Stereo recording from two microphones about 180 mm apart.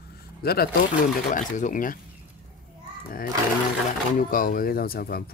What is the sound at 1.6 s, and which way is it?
Fowl, 45° left (ahead or behind).